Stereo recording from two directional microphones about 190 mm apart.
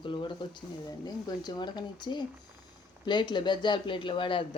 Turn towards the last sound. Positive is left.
turn(degrees=25)  # may be behind; listen again after turning